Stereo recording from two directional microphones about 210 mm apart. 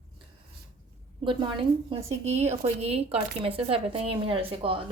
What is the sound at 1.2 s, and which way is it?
A woman's voice, 25° right (ahead or behind).